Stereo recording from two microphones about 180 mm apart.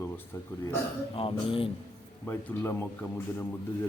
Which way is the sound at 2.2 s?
10° left (ahead or behind).